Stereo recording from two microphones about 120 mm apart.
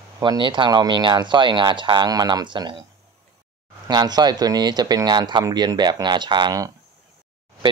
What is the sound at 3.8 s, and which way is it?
Speech, 35° right (ahead or behind).